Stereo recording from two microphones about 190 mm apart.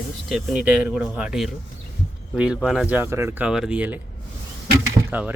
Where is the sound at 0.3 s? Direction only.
Centre (ahead or behind).